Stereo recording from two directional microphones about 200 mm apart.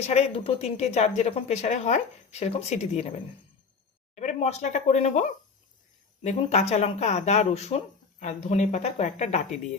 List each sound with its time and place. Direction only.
0.1 s a woman's voice: 30° left (ahead or behind)
6.2 s a woman's voice: 35° left (ahead or behind)